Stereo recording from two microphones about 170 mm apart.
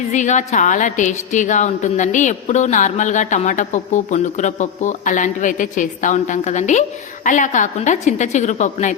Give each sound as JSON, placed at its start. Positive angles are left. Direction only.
{"t": 0.1, "sound": "a woman's voice", "side_deg": 45}